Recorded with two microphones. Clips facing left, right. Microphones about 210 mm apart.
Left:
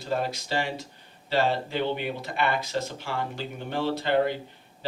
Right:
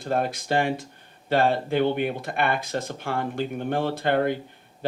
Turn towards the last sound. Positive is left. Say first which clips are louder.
# right 1 dB
turn(degrees=-55)  # may be behind; listen again after turning